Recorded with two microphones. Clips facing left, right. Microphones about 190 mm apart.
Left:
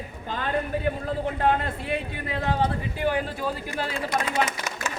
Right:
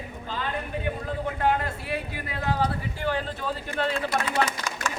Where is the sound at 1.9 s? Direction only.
25° left (ahead or behind).